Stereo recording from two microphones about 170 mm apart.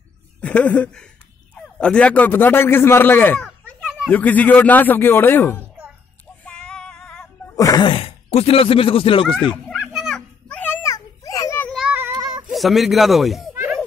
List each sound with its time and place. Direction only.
0.4 s a man's voice: 10° left (ahead or behind)
6.4 s female singing: 5° left (ahead or behind)
7.5 s speech: 20° left (ahead or behind)
9.7 s children playing: centre (ahead or behind); by 11.7 s 15° left (ahead or behind)
11.7 s child singing: 5° right (ahead or behind)
12.5 s speech: centre (ahead or behind)